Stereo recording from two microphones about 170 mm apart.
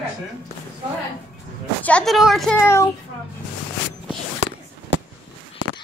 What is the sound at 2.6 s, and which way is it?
Speech, 15° left (ahead or behind).